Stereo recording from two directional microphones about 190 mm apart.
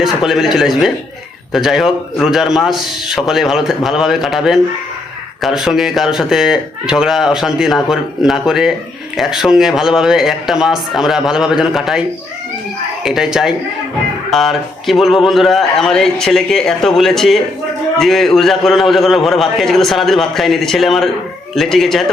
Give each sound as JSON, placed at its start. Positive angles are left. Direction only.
{"t": 0.0, "sound": "speech", "side_deg": 0}